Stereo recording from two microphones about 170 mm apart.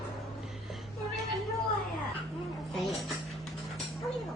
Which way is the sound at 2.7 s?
Centre (ahead or behind).